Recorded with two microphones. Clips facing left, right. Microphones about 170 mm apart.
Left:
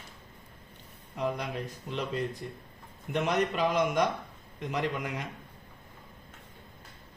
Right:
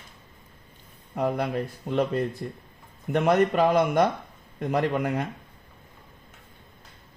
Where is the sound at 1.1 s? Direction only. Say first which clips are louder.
Right 6 dB; 55° right (ahead or behind).